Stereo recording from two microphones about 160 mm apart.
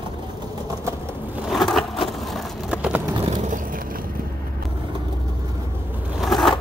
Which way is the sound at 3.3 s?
55° right (ahead or behind).